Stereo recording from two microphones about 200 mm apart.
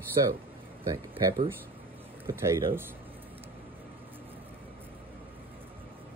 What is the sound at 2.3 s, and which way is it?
Speech, 15° right (ahead or behind).